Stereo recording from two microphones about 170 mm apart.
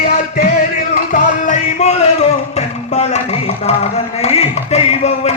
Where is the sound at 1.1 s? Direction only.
45° left (ahead or behind).